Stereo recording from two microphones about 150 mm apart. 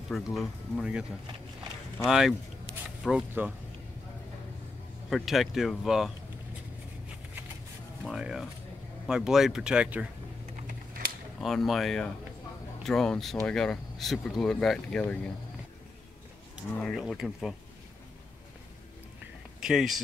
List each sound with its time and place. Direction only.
0.1 s speech: centre (ahead or behind)
2.0 s speech: 5° right (ahead or behind)
5.1 s speech: centre (ahead or behind)
8.0 s speech: 5° right (ahead or behind)
10.5 s typing: 65° right (ahead or behind)
11.4 s speech: centre (ahead or behind)
16.7 s speech: 5° left (ahead or behind)
19.6 s speech: centre (ahead or behind)